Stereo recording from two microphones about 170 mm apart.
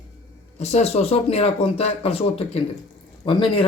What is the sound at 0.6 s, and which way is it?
Speech, 40° left (ahead or behind).